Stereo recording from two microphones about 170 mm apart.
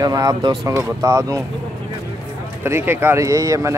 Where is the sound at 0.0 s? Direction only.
20° right (ahead or behind).